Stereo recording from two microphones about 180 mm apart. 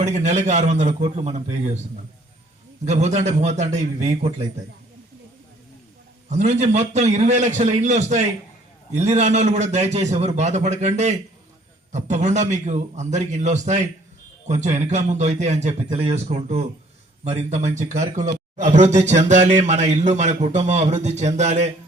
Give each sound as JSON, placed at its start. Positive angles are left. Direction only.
{"t": 0.0, "sound": "a man's voice", "side_deg": -40}
{"t": 2.8, "sound": "a man's voice", "side_deg": -40}
{"t": 6.3, "sound": "a man's voice", "side_deg": -40}